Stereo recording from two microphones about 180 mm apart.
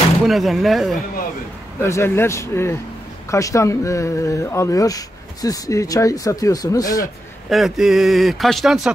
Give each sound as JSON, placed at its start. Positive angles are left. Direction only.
{"t": 0.2, "sound": "a man's voice", "side_deg": 0}
{"t": 1.8, "sound": "speech", "side_deg": 15}
{"t": 7.4, "sound": "a man's voice", "side_deg": 0}